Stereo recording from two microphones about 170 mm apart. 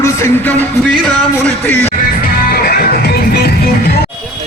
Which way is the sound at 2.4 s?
65° left (ahead or behind).